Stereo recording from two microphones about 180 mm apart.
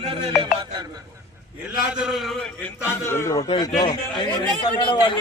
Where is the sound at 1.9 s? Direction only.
5° right (ahead or behind).